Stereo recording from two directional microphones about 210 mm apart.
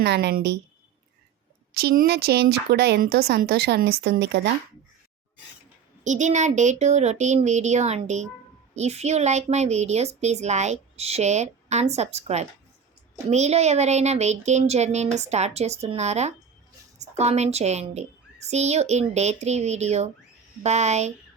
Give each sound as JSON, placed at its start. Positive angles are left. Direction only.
{"t": 0.0, "sound": "speech", "side_deg": -50}
{"t": 1.7, "sound": "speech", "side_deg": -50}
{"t": 6.1, "sound": "a woman's voice", "side_deg": -35}